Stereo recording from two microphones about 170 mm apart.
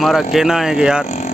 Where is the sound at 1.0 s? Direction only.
40° left (ahead or behind).